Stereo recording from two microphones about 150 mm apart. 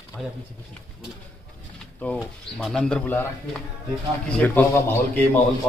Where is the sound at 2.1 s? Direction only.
Centre (ahead or behind).